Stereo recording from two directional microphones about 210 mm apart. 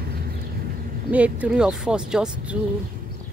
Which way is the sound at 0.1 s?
50° right (ahead or behind).